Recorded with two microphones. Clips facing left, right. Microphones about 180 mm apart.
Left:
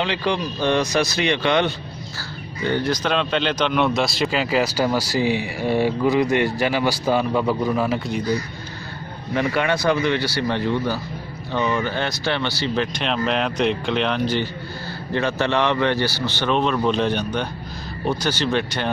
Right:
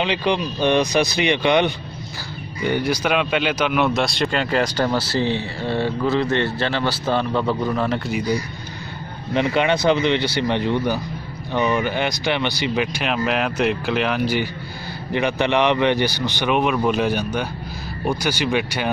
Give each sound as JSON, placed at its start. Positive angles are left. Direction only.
{"t": 0.0, "sound": "a man's voice", "side_deg": -15}
{"t": 9.3, "sound": "speech", "side_deg": -20}